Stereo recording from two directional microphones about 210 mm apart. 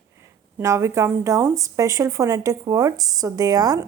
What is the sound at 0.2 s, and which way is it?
Speech, 15° right (ahead or behind).